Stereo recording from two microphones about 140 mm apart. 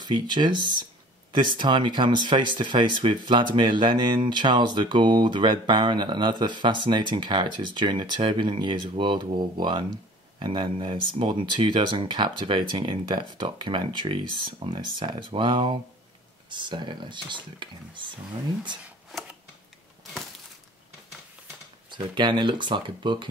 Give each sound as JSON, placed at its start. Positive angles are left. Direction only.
{"t": 0.0, "sound": "speech", "side_deg": -30}
{"t": 21.9, "sound": "speech", "side_deg": -35}